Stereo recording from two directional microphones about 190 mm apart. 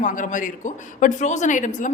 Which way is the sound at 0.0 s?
45° left (ahead or behind).